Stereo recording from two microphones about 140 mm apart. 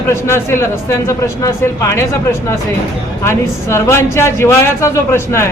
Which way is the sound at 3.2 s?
20° left (ahead or behind).